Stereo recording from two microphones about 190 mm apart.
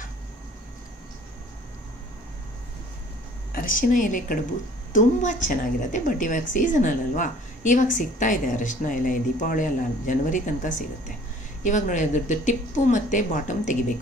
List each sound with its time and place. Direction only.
3.5 s a woman's voice: 45° left (ahead or behind)